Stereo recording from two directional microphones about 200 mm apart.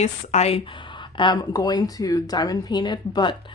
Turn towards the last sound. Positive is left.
turn(degrees=20)  # may be behind; listen again after turning